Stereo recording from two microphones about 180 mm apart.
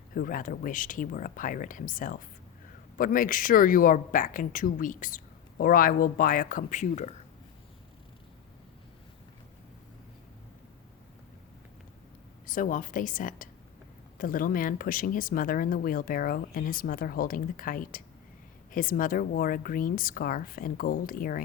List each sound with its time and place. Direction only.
0.1 s speech: 50° left (ahead or behind)
12.5 s speech: 45° left (ahead or behind)